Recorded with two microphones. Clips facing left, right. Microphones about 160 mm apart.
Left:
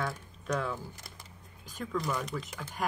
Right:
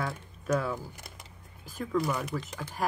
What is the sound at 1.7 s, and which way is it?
Speech, 10° right (ahead or behind).